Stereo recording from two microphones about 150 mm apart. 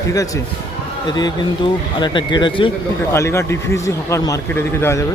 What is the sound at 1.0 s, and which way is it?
Speech, 30° left (ahead or behind).